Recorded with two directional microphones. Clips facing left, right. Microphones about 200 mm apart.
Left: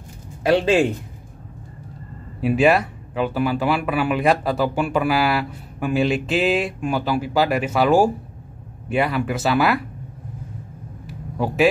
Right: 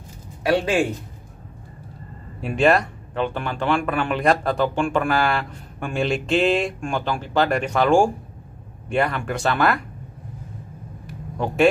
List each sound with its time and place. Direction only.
0.4 s a man's voice: 25° left (ahead or behind)
2.4 s speech: 5° left (ahead or behind)
11.1 s a sound: 5° left (ahead or behind)